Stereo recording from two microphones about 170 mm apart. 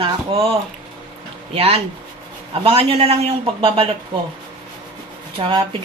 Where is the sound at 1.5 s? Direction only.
35° right (ahead or behind).